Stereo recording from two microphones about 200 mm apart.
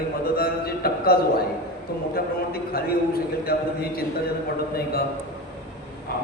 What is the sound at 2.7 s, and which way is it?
Speech, 50° left (ahead or behind).